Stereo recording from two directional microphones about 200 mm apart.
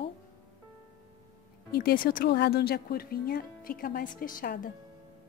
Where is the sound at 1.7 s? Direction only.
50° left (ahead or behind).